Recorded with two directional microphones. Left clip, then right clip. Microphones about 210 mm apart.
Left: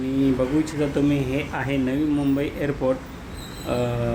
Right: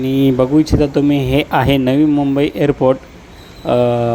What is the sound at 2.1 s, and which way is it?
Speech, 35° right (ahead or behind).